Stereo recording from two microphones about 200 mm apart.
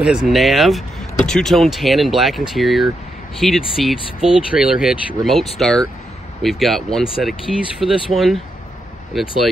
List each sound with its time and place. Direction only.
0.0 s speech: 5° right (ahead or behind)